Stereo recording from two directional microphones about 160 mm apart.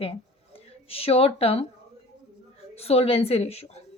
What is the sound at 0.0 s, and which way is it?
Speech, 35° left (ahead or behind).